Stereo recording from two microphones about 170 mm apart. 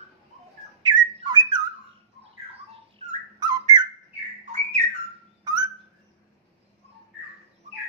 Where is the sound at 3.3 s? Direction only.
25° right (ahead or behind).